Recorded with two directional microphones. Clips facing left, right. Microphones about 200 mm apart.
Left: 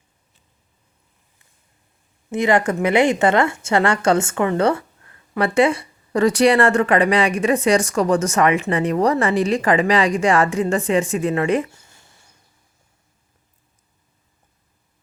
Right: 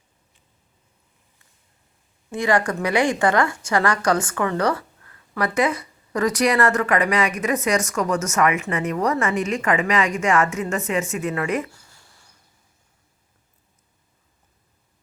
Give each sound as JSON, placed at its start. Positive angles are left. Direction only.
{"t": 2.3, "sound": "a woman's voice", "side_deg": 20}